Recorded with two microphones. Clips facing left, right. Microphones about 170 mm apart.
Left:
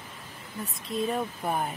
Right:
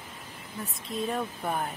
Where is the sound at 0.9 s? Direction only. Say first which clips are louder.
Left 2 dB; 5° left (ahead or behind).